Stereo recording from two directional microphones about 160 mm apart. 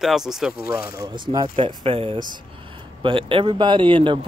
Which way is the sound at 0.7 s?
20° right (ahead or behind).